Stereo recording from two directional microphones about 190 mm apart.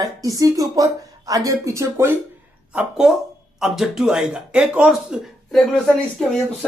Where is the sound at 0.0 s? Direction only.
20° right (ahead or behind).